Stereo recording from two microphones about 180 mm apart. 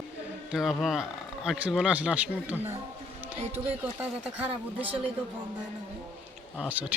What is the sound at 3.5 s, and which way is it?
Speech, 10° right (ahead or behind).